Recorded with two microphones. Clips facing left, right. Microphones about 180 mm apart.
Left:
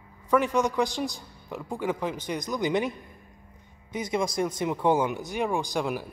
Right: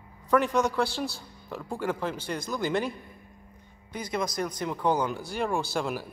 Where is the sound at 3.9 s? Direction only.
25° left (ahead or behind).